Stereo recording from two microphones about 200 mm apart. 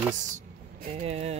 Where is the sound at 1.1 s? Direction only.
30° right (ahead or behind).